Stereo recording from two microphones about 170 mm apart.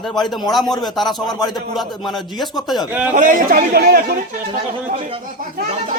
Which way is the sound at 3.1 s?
50° right (ahead or behind).